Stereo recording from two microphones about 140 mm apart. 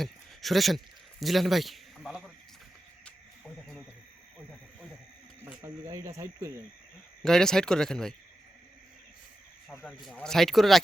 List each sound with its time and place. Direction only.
0.0 s speech: centre (ahead or behind)
3.0 s frog: 5° left (ahead or behind)
5.6 s speech: 25° right (ahead or behind)
7.2 s speech: 5° left (ahead or behind)
9.8 s speech: centre (ahead or behind)